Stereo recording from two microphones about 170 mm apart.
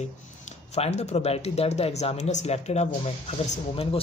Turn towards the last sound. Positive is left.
turn(degrees=35)  # may be behind; listen again after turning